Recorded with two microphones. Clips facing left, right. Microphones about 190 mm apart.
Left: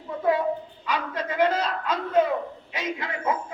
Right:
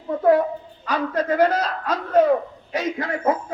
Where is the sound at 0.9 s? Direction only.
45° right (ahead or behind).